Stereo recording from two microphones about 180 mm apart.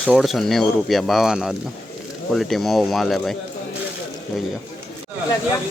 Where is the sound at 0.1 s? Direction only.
Centre (ahead or behind).